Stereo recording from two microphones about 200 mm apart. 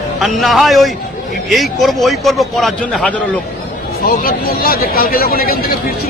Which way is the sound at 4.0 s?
50° left (ahead or behind).